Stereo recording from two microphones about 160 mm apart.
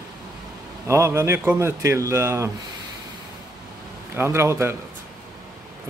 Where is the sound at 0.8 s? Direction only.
20° right (ahead or behind).